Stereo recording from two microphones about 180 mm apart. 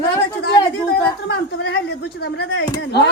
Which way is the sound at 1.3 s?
70° left (ahead or behind).